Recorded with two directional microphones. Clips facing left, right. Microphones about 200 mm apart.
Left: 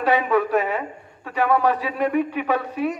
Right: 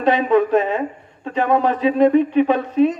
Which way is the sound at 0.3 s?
25° right (ahead or behind).